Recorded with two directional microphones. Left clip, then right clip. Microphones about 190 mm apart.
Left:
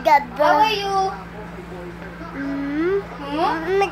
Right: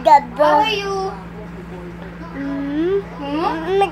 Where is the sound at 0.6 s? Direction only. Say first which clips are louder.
Even; 25° left (ahead or behind).